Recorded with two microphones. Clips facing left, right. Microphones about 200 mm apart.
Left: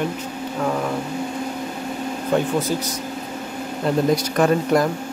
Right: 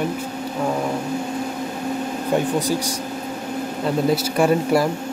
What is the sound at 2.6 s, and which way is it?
Speech, 15° right (ahead or behind).